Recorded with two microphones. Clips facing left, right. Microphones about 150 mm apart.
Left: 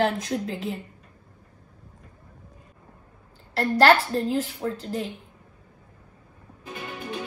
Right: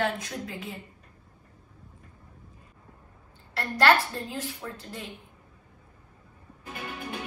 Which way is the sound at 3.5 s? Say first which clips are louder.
Left 4 dB; 35° left (ahead or behind).